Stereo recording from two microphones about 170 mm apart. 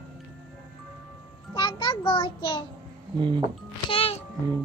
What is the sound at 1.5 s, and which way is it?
A child's voice, 30° left (ahead or behind).